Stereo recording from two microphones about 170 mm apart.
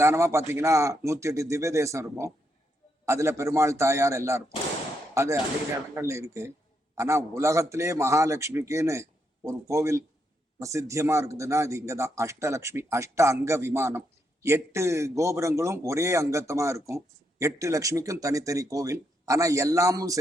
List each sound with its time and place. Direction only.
0.0 s a man's voice: 15° right (ahead or behind)